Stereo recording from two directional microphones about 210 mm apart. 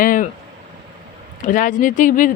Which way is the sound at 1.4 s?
40° left (ahead or behind).